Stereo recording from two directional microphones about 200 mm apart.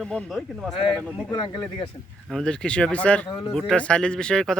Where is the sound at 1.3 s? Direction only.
20° left (ahead or behind).